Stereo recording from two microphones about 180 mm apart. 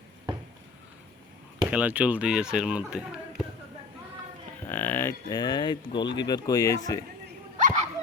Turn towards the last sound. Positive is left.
turn(degrees=-40)  # may be behind; listen again after turning